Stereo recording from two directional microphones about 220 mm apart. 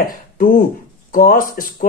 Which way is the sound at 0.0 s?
40° left (ahead or behind).